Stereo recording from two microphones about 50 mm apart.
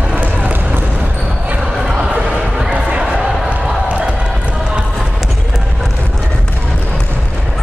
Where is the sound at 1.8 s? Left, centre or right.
Centre.